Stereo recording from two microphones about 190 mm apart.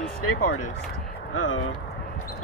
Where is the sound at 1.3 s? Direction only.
90° left.